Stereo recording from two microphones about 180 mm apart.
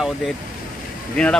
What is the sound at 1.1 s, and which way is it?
Speech, 5° left (ahead or behind).